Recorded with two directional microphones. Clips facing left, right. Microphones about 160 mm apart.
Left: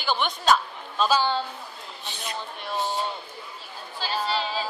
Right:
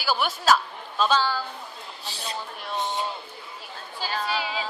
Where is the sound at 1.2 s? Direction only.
25° left (ahead or behind).